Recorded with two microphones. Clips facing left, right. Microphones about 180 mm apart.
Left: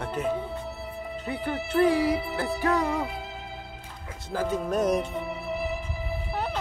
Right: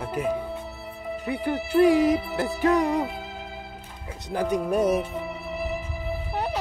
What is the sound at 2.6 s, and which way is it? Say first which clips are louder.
Hoot: right 5 dB; 20° right (ahead or behind).